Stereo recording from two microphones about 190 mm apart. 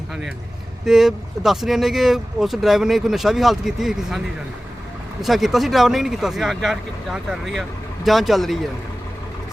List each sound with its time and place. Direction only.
0.9 s speech: centre (ahead or behind)
5.2 s speech: centre (ahead or behind)